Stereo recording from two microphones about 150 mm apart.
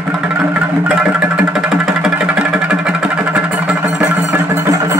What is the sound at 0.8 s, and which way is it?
Music, 10° right (ahead or behind).